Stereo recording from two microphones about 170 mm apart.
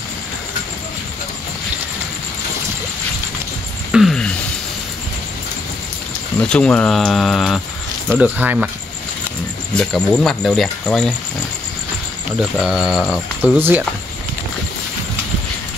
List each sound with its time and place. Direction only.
3.9 s a sound: centre (ahead or behind)
6.5 s speech: 5° left (ahead or behind)
9.8 s speech: centre (ahead or behind)
12.4 s speech: 5° right (ahead or behind)